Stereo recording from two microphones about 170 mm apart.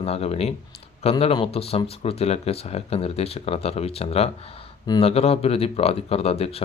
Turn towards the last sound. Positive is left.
turn(degrees=35)  # may be behind; listen again after turning